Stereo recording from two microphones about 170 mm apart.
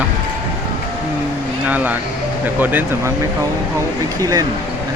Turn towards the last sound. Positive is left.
turn(degrees=-20)  # may be behind; listen again after turning